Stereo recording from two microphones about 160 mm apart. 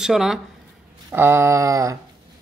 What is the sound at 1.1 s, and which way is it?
Speech, 15° right (ahead or behind).